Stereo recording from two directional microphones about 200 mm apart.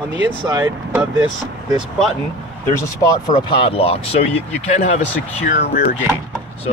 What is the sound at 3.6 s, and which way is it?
Speech, 30° left (ahead or behind).